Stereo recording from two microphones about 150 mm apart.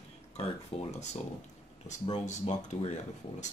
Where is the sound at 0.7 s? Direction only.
45° left (ahead or behind).